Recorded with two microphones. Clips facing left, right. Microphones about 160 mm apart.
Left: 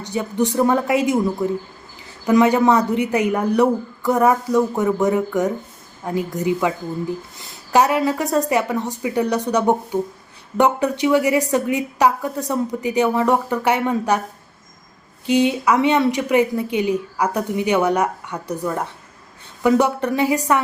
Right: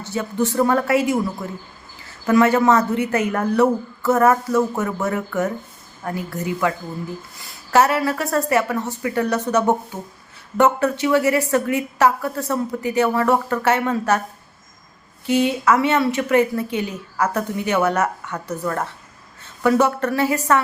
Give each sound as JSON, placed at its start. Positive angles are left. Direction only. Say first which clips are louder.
{"t": 0.0, "sound": "a woman's voice", "louder": "left 1 dB", "side_deg": 15}
{"t": 15.3, "sound": "a woman's voice", "louder": "left 1 dB", "side_deg": 15}